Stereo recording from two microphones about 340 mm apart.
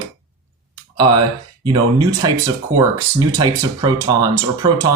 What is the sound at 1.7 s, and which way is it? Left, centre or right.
Speech, centre.